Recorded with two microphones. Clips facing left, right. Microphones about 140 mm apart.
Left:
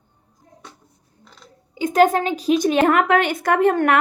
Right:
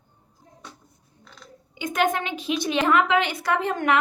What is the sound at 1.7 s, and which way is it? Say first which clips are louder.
A woman's voice: left 8 dB; 35° left (ahead or behind).